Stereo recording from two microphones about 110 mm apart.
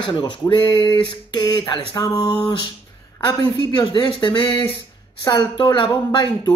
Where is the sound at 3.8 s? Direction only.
45° left (ahead or behind).